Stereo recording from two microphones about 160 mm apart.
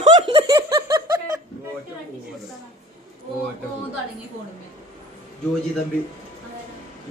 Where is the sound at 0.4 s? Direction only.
25° right (ahead or behind).